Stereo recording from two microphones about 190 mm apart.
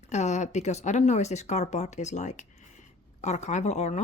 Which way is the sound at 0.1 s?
35° left (ahead or behind).